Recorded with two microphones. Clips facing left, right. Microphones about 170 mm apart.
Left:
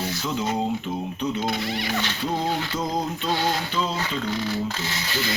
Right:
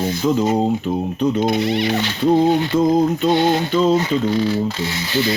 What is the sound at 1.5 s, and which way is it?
Speech, 20° right (ahead or behind).